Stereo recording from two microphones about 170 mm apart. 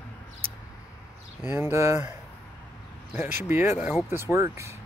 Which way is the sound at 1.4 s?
15° right (ahead or behind).